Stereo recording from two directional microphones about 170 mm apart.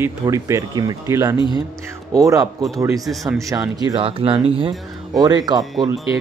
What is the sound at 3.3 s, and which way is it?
Speech, 20° right (ahead or behind).